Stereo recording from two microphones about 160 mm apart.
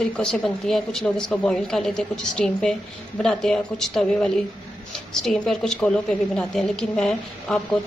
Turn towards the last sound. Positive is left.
turn(degrees=5)  # may be behind; listen again after turning